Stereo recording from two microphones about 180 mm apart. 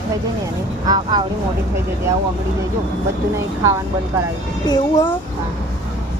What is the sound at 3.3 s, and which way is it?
Speech, 15° right (ahead or behind).